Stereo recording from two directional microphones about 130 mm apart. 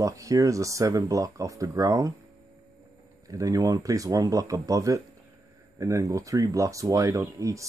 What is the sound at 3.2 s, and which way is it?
Speech, 25° right (ahead or behind).